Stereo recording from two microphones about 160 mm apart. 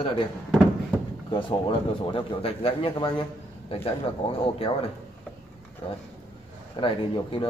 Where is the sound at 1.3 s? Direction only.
30° left (ahead or behind).